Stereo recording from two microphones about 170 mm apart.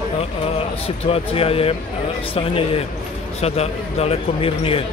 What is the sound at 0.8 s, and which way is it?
Speech, 35° left (ahead or behind).